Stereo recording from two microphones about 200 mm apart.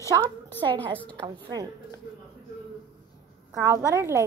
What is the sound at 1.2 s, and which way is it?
Speech, 20° right (ahead or behind).